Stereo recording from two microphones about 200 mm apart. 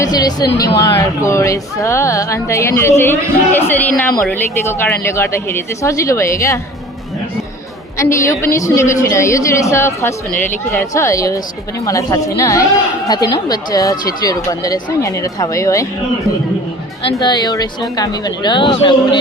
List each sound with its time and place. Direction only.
0.0 s speech: 20° left (ahead or behind)
7.9 s speech: 15° left (ahead or behind)
17.2 s speech: 20° left (ahead or behind)